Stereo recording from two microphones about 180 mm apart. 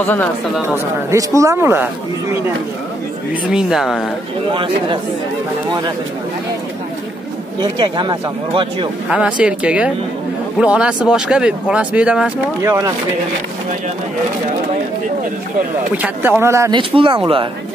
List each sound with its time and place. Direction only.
0.0 s speech: 10° left (ahead or behind)
1.1 s speech: 15° right (ahead or behind)
3.4 s speech: 5° right (ahead or behind)
4.5 s speech: 25° right (ahead or behind)
7.6 s speech: 25° right (ahead or behind)
9.1 s speech: 5° right (ahead or behind)
12.6 s speech: 15° right (ahead or behind)
16.0 s speech: 10° right (ahead or behind)
16.9 s speech: 30° right (ahead or behind)